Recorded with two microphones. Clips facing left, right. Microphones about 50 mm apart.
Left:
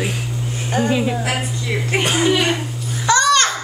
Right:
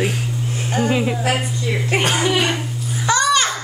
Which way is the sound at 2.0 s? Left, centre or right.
Right.